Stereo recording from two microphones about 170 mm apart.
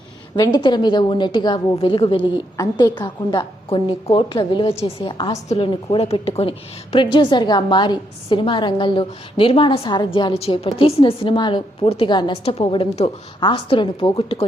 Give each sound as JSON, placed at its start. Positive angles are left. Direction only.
{"t": 0.3, "sound": "a woman's voice", "side_deg": 25}